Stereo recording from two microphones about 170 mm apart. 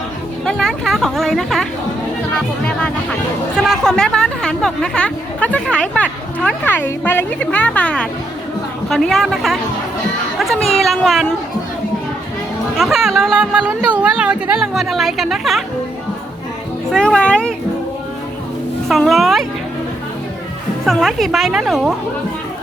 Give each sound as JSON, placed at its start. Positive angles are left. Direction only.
{"t": 0.4, "sound": "speech", "side_deg": 0}
{"t": 2.6, "sound": "speech", "side_deg": 5}
{"t": 11.0, "sound": "speech", "side_deg": 0}
{"t": 12.7, "sound": "speech", "side_deg": 0}
{"t": 16.9, "sound": "speech", "side_deg": 5}
{"t": 18.9, "sound": "speech", "side_deg": 0}
{"t": 20.8, "sound": "speech", "side_deg": 0}